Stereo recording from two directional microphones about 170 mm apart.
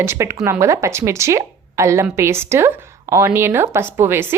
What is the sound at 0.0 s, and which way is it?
A woman's voice, 15° right (ahead or behind).